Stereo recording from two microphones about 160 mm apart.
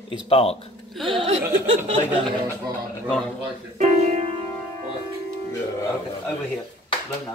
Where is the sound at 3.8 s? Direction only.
45° right (ahead or behind).